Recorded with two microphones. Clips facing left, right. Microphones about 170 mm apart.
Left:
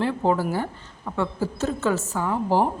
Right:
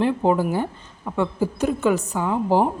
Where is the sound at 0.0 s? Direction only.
15° right (ahead or behind).